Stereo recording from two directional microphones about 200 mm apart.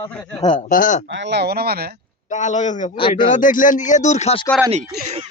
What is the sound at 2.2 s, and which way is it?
Speech, 35° left (ahead or behind).